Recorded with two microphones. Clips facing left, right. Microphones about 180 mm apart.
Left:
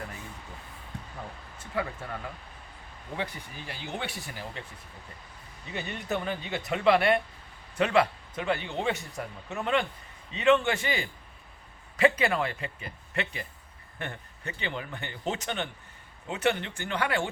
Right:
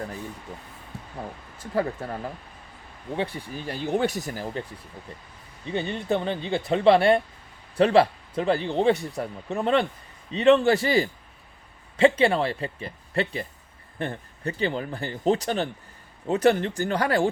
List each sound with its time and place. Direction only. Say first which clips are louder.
0.9 s a sound: right 1 dB; 5° right (ahead or behind)
1.5 s speech: right 7 dB; 40° right (ahead or behind)
5.6 s speech: right 8 dB; 30° right (ahead or behind)